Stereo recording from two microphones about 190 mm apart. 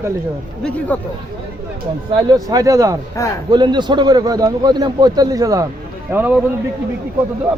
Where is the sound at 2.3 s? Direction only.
20° right (ahead or behind).